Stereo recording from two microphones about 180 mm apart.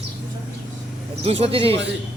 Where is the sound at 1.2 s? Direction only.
30° right (ahead or behind).